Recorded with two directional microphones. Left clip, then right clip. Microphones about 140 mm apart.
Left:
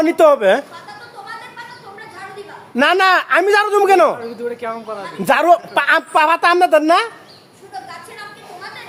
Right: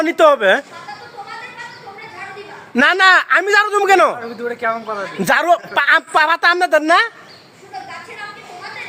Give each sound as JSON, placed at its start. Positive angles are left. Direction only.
{"t": 0.0, "sound": "a woman's voice", "side_deg": -30}
{"t": 2.7, "sound": "a woman's voice", "side_deg": -30}
{"t": 4.4, "sound": "speech", "side_deg": -5}
{"t": 5.2, "sound": "a woman's voice", "side_deg": -30}